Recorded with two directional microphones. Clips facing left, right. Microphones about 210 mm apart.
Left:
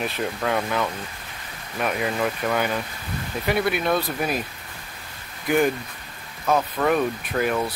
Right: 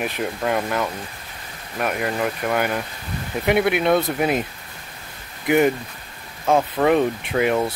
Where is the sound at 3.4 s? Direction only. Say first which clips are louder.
Right 5 dB; 20° right (ahead or behind).